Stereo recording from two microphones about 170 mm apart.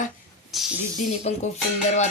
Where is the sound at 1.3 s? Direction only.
40° left (ahead or behind).